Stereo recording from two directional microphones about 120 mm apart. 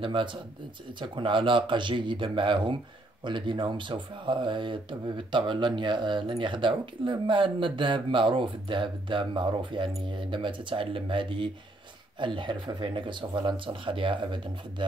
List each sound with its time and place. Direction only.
0.0 s speech: 45° right (ahead or behind)